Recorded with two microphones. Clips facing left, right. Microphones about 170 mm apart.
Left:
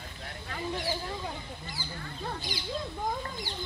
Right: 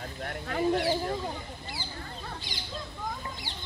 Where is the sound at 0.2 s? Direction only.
55° right (ahead or behind).